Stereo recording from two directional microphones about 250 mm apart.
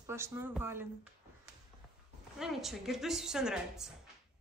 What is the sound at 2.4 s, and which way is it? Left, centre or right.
A woman's voice, centre.